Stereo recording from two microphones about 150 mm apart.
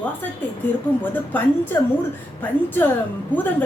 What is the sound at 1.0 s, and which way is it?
A woman's voice, 10° left (ahead or behind).